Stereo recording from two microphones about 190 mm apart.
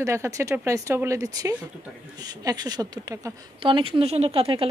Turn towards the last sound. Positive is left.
turn(degrees=-30)  # may be behind; listen again after turning